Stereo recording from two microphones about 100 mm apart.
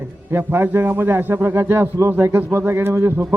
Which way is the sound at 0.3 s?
20° right (ahead or behind).